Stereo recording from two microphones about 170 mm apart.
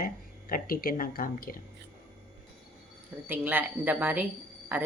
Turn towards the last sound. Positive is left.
turn(degrees=-10)  # may be behind; listen again after turning